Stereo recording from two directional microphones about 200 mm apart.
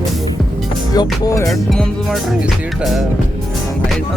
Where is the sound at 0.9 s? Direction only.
20° left (ahead or behind).